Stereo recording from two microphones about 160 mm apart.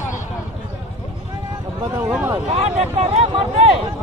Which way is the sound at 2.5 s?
40° right (ahead or behind).